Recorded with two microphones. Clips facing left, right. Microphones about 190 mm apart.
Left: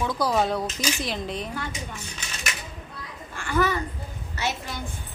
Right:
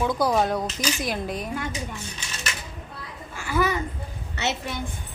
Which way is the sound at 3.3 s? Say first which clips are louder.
Even; 5° right (ahead or behind).